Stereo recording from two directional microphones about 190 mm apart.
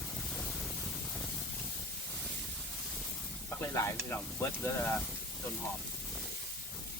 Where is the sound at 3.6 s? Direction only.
15° left (ahead or behind).